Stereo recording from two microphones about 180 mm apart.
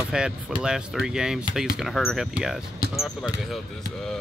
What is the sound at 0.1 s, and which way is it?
Speech, 5° right (ahead or behind).